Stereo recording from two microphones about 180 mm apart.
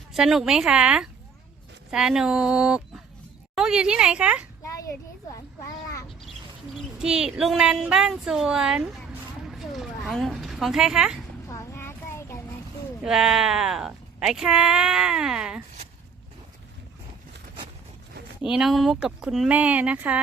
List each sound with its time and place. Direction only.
0.1 s speech: centre (ahead or behind)
4.6 s a sound: 15° left (ahead or behind)
7.0 s speech: 5° right (ahead or behind)
11.4 s child singing: 15° left (ahead or behind)
13.1 s speech: centre (ahead or behind)
18.4 s speech: 5° right (ahead or behind)